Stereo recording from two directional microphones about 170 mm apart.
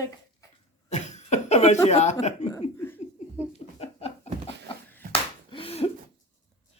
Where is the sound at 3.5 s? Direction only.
40° left (ahead or behind).